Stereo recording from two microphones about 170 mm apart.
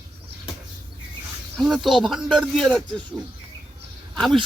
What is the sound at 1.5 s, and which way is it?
A man's voice, centre (ahead or behind).